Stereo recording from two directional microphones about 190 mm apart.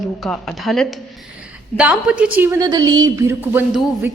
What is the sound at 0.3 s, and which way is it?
A woman's voice, 5° left (ahead or behind).